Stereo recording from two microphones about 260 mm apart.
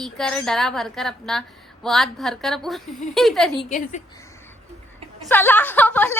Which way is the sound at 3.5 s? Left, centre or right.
Left.